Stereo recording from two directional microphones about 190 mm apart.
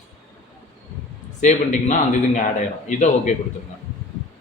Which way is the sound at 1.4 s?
40° left (ahead or behind).